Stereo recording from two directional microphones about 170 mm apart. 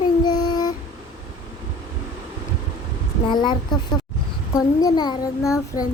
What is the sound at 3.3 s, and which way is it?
Speech, 25° left (ahead or behind).